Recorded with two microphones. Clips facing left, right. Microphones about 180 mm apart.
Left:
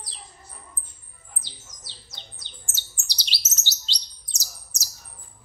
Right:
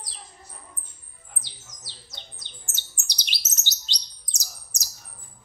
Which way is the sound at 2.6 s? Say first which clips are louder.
Even; 15° right (ahead or behind).